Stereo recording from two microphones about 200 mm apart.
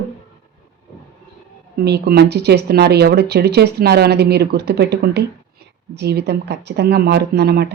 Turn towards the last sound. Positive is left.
turn(degrees=-55)  # may be behind; listen again after turning